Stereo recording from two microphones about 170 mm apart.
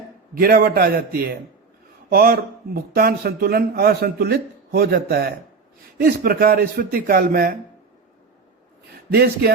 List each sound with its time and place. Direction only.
0.3 s speech: 60° right (ahead or behind)
9.1 s speech: 70° right (ahead or behind)